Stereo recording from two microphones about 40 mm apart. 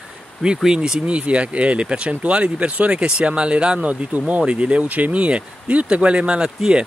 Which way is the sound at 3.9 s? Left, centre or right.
Right.